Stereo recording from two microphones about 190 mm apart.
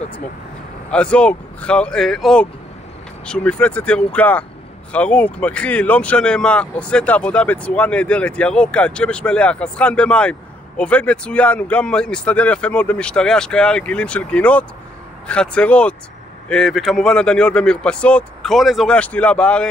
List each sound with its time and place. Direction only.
0.8 s speech: 5° left (ahead or behind)